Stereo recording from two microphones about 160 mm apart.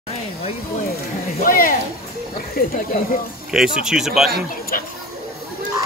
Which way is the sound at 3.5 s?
5° right (ahead or behind).